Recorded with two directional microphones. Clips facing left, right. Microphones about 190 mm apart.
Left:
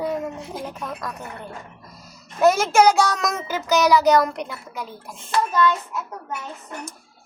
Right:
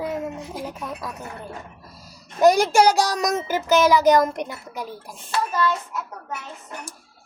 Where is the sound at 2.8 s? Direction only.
35° right (ahead or behind).